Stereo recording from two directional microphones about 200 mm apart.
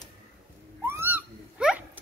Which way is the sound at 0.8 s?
10° right (ahead or behind).